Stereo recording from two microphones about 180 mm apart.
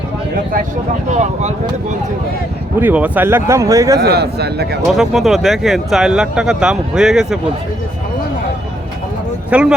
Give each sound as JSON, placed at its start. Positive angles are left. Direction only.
{"t": 1.1, "sound": "speech", "side_deg": -40}
{"t": 2.8, "sound": "speech", "side_deg": -10}
{"t": 4.0, "sound": "speech", "side_deg": -65}
{"t": 4.9, "sound": "speech", "side_deg": 0}
{"t": 9.5, "sound": "speech", "side_deg": -5}